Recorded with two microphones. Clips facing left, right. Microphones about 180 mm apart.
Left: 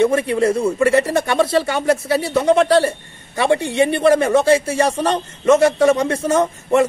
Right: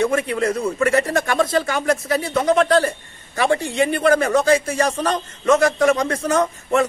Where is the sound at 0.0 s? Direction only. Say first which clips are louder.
Left 4 dB; 25° left (ahead or behind).